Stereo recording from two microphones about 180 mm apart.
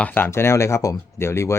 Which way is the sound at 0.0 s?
10° left (ahead or behind).